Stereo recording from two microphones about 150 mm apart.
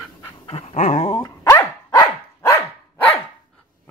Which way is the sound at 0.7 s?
50° left (ahead or behind).